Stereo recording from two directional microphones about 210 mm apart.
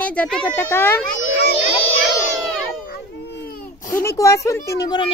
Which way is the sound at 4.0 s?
15° left (ahead or behind).